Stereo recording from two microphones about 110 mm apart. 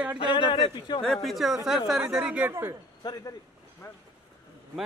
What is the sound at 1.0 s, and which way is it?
Speech, 5° left (ahead or behind).